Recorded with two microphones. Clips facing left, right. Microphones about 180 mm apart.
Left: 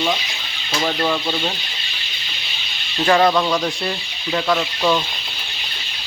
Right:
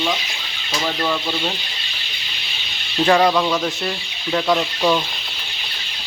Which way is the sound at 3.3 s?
Centre (ahead or behind).